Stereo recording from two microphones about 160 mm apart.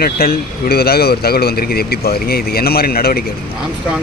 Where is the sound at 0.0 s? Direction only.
70° left (ahead or behind).